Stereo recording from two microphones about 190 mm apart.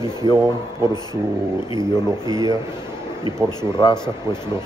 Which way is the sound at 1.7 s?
20° left (ahead or behind).